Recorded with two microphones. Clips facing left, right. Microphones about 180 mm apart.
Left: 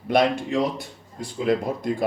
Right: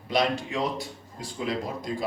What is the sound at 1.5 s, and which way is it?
Speech, 55° left (ahead or behind).